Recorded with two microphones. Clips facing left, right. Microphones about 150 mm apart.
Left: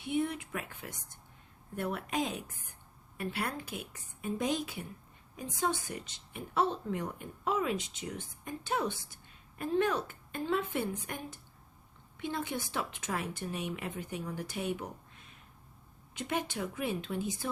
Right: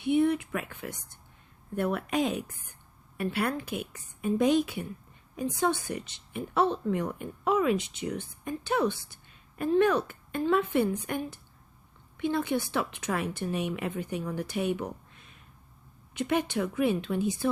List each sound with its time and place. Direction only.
0.0 s a woman's voice: 65° right (ahead or behind)
16.1 s a woman's voice: 70° right (ahead or behind)